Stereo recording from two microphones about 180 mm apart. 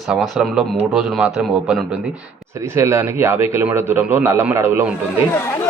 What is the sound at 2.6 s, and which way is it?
A man's voice, 15° right (ahead or behind).